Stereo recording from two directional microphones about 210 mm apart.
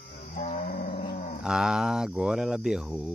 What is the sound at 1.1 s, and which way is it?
Dog, 35° left (ahead or behind).